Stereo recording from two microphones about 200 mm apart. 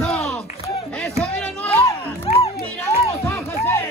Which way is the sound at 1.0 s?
5° left (ahead or behind).